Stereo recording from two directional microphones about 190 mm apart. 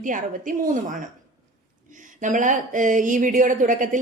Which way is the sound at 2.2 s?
40° right (ahead or behind).